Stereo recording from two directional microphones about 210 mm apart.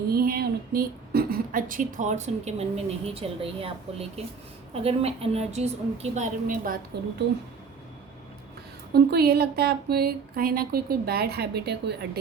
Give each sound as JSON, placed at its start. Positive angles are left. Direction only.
{"t": 0.1, "sound": "a woman's voice", "side_deg": -45}
{"t": 8.9, "sound": "speech", "side_deg": -50}